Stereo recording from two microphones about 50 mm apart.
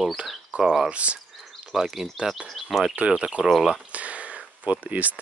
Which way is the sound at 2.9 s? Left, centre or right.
Right.